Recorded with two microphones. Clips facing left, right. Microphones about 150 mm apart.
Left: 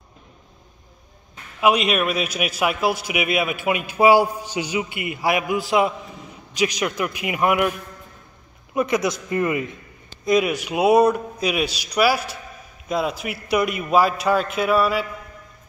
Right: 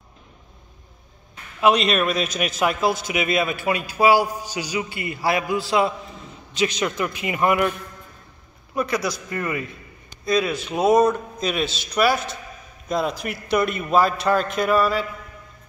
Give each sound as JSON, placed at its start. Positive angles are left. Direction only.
{"t": 1.6, "sound": "a man's voice", "side_deg": 10}
{"t": 8.7, "sound": "a man's voice", "side_deg": 20}